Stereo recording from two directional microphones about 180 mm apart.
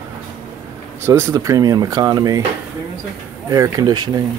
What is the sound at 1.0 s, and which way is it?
Speech, 15° right (ahead or behind).